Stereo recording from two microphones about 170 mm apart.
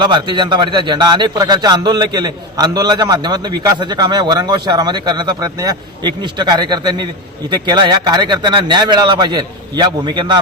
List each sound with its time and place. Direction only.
0.0 s a man's voice: 25° right (ahead or behind)